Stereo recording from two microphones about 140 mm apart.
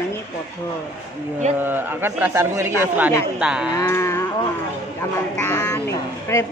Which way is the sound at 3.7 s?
20° left (ahead or behind).